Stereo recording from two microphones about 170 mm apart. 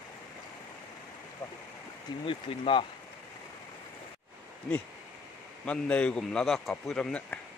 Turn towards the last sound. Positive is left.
turn(degrees=5)  # may be behind; listen again after turning